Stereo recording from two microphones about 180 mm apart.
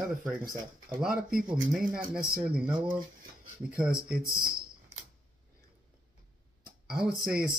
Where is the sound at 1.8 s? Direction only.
50° right (ahead or behind).